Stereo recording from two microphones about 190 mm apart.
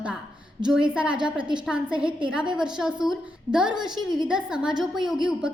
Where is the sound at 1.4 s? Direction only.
25° right (ahead or behind).